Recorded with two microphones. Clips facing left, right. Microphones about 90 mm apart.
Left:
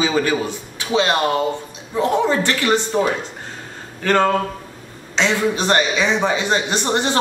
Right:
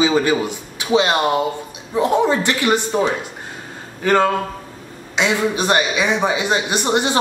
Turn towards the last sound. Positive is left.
turn(degrees=-15)  # may be behind; listen again after turning